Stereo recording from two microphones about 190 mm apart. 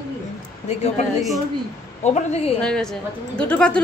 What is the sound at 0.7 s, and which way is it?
Speech, 35° left (ahead or behind).